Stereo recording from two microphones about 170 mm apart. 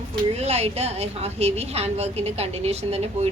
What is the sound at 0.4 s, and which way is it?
A woman's voice, 40° right (ahead or behind).